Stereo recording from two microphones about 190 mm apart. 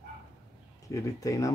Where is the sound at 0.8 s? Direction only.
15° left (ahead or behind).